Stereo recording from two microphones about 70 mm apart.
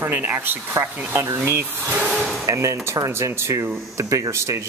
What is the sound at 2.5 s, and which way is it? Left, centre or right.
Speech, right.